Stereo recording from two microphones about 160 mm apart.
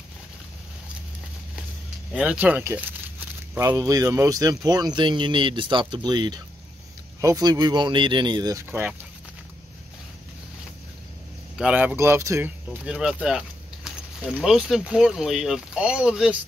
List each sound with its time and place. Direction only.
2.1 s speech: 10° right (ahead or behind)
11.5 s speech: 10° right (ahead or behind)